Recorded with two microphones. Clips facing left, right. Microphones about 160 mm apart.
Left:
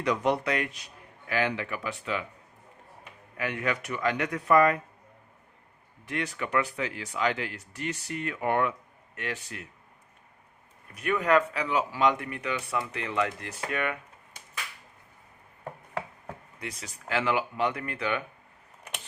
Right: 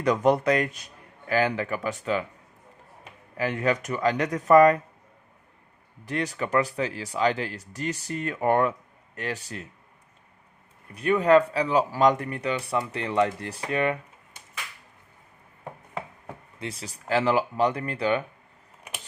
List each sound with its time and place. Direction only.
0.0 s speech: 45° right (ahead or behind)
3.3 s speech: 35° right (ahead or behind)
6.1 s speech: 35° right (ahead or behind)
10.9 s speech: 30° right (ahead or behind)
16.6 s speech: 30° right (ahead or behind)